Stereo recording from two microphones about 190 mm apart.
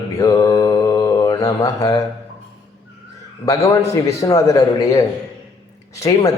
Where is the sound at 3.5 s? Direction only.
15° left (ahead or behind).